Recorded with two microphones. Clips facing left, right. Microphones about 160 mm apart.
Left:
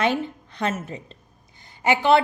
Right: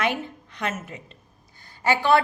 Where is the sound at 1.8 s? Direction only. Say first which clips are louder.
Left 2 dB; 20° left (ahead or behind).